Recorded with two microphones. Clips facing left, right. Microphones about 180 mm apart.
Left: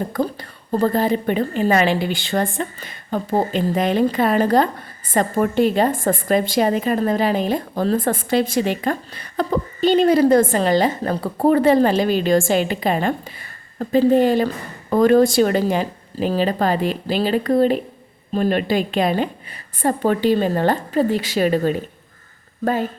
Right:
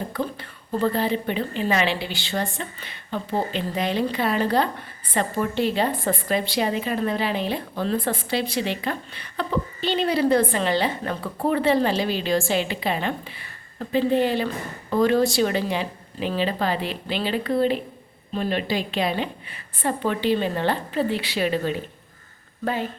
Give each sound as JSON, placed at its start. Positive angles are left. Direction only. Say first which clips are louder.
{"t": 0.7, "sound": "a woman's voice", "louder": "left 5 dB", "side_deg": 45}